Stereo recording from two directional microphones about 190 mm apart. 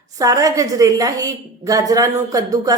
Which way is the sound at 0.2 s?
20° right (ahead or behind).